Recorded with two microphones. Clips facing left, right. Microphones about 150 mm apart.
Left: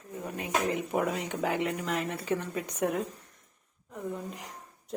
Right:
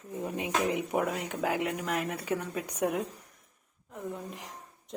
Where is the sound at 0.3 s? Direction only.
15° right (ahead or behind).